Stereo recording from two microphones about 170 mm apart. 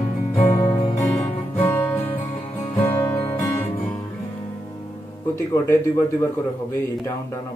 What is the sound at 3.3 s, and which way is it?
Music, 10° left (ahead or behind).